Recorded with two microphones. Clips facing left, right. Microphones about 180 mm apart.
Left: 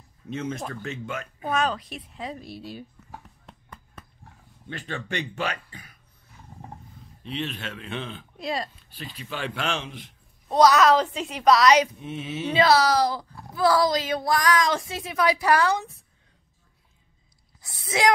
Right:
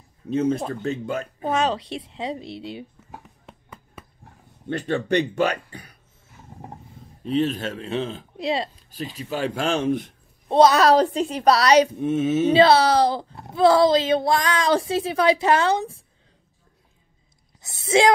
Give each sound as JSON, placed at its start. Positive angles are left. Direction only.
{"t": 0.3, "sound": "speech", "side_deg": -35}
{"t": 3.4, "sound": "a sound", "side_deg": -5}
{"t": 4.6, "sound": "a woman's voice", "side_deg": -45}
{"t": 7.2, "sound": "a woman's voice", "side_deg": -40}
{"t": 8.9, "sound": "speech", "side_deg": -40}
{"t": 10.5, "sound": "a woman's voice", "side_deg": -30}
{"t": 12.0, "sound": "speech", "side_deg": -50}
{"t": 12.5, "sound": "speech", "side_deg": -30}
{"t": 17.6, "sound": "speech", "side_deg": -25}